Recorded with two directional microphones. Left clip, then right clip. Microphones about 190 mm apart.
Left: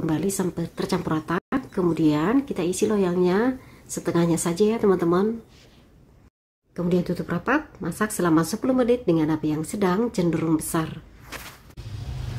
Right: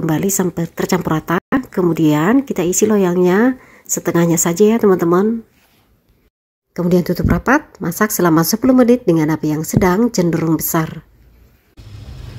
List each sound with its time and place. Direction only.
0.0 s speech: 35° right (ahead or behind)
6.7 s speech: 40° right (ahead or behind)